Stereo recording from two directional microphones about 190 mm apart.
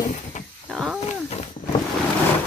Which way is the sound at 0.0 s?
40° left (ahead or behind).